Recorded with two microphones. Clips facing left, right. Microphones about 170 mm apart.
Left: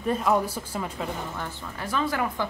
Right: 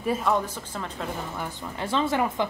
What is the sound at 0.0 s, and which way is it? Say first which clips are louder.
Speech: left 1 dB; centre (ahead or behind).